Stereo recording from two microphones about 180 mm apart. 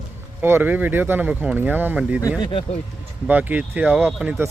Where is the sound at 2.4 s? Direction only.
30° left (ahead or behind).